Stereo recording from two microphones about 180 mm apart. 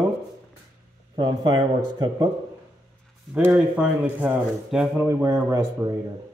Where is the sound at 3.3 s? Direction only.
10° right (ahead or behind).